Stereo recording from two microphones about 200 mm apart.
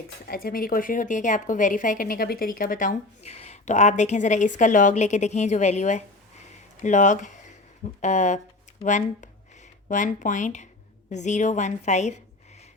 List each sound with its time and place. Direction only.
0.3 s a woman's voice: 50° left (ahead or behind)
6.5 s a sound: 35° left (ahead or behind)
8.0 s a woman's voice: 35° left (ahead or behind)